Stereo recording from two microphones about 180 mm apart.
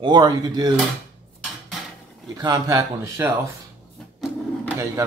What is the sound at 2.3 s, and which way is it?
A man's voice, 20° right (ahead or behind).